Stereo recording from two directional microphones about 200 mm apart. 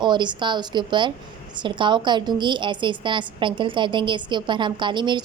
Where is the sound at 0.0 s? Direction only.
20° right (ahead or behind).